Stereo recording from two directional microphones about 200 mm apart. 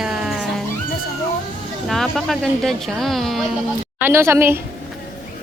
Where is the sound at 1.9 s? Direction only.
Centre (ahead or behind).